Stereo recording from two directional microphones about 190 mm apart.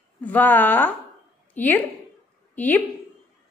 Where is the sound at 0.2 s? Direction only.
10° left (ahead or behind).